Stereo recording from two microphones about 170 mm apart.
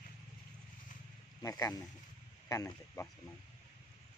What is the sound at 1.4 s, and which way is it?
Speech, 20° left (ahead or behind).